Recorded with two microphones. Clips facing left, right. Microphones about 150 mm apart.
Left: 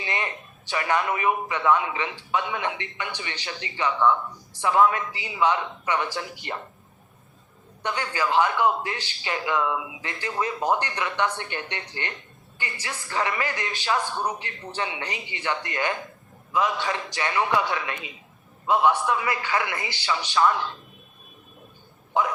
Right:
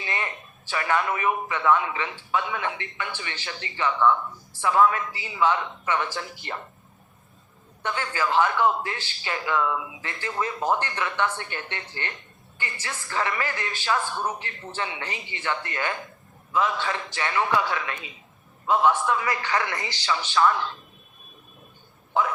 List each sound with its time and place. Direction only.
0.0 s speech: 20° left (ahead or behind)
7.8 s speech: 15° left (ahead or behind)
22.1 s speech: 15° left (ahead or behind)